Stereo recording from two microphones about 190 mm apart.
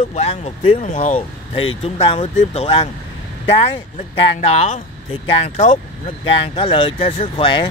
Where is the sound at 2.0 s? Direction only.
25° left (ahead or behind).